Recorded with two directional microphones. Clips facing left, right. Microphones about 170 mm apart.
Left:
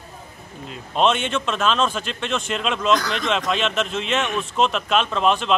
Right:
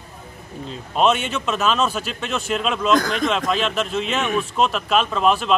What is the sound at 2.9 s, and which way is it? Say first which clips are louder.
Speech: right 3 dB; 45° right (ahead or behind).